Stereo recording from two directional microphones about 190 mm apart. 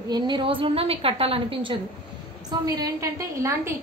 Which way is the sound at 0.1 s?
25° right (ahead or behind).